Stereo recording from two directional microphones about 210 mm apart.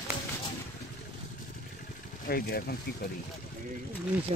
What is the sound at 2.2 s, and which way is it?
Speech, 45° left (ahead or behind).